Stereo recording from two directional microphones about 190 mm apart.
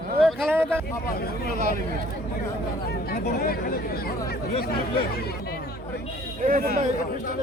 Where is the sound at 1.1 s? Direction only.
55° left (ahead or behind).